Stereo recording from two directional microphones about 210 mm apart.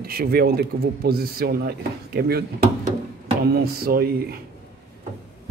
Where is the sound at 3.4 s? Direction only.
45° right (ahead or behind).